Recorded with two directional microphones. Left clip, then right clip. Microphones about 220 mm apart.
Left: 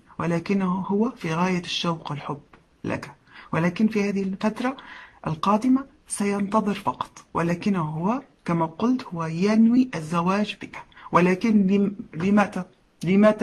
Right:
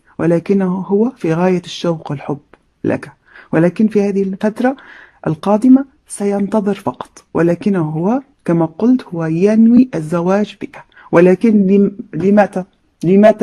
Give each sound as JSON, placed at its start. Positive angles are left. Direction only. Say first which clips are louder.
{"t": 0.2, "sound": "speech", "louder": "right 12 dB", "side_deg": -40}